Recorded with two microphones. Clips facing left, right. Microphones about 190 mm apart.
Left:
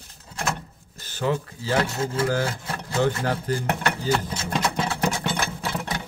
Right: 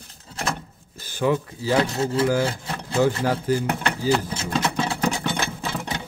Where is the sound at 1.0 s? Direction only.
15° right (ahead or behind).